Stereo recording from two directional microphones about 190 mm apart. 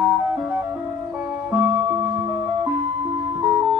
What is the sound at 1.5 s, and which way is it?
Music, 10° right (ahead or behind).